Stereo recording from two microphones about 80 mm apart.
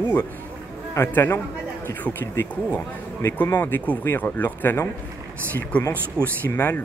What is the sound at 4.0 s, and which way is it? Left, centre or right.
Speech, left.